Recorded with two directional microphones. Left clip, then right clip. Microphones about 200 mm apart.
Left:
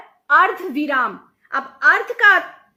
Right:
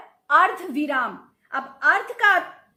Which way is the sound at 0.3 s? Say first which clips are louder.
Left 3 dB; 40° left (ahead or behind).